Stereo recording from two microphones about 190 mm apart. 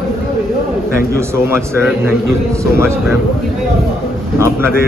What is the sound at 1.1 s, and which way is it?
A man's voice, 15° right (ahead or behind).